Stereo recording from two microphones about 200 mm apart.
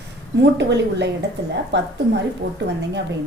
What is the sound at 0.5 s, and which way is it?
Speech, 60° right (ahead or behind).